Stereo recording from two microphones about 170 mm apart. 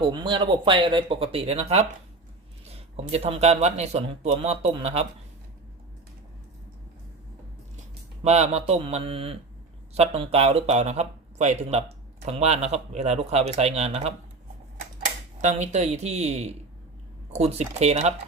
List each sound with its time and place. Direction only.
0.0 s speech: 30° right (ahead or behind)
2.6 s a sound: 40° right (ahead or behind)
3.0 s speech: 40° right (ahead or behind)
8.2 s speech: 40° right (ahead or behind)
15.4 s speech: 45° right (ahead or behind)